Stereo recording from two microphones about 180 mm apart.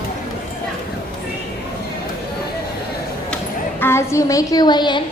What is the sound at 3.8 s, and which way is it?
A woman's voice, 15° left (ahead or behind).